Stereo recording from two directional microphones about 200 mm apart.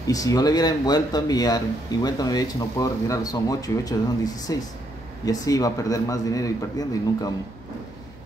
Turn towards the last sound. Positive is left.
turn(degrees=15)  # may be behind; listen again after turning